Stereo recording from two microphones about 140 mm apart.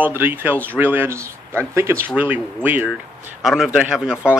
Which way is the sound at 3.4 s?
Centre (ahead or behind).